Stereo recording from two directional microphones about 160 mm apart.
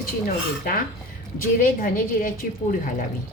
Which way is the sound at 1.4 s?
60° left (ahead or behind).